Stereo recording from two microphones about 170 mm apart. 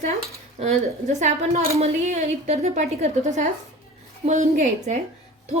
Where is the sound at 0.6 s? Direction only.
45° right (ahead or behind).